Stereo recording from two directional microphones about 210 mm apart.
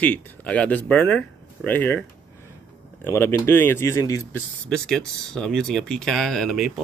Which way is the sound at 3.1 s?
10° left (ahead or behind).